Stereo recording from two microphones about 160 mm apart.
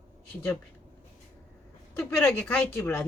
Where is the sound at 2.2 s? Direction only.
10° left (ahead or behind).